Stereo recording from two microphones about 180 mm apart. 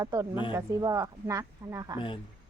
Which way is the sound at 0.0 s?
20° right (ahead or behind).